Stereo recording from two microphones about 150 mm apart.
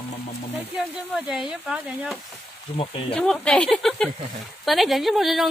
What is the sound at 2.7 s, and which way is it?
Speech, 35° left (ahead or behind).